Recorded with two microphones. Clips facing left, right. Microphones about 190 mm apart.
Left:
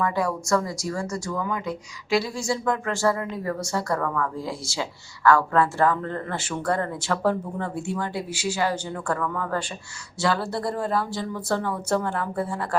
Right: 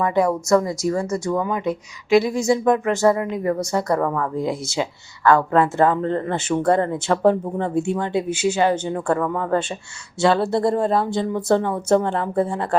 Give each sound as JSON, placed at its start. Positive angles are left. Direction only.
{"t": 0.0, "sound": "speech", "side_deg": -20}